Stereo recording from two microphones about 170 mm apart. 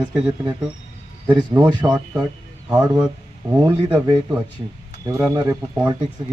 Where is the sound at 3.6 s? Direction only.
20° right (ahead or behind).